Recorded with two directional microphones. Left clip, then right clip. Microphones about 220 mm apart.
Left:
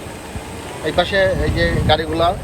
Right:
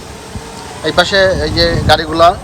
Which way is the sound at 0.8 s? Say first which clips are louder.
Right 6 dB; 20° right (ahead or behind).